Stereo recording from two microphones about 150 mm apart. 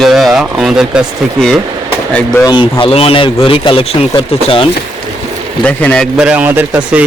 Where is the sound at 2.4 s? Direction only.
30° left (ahead or behind).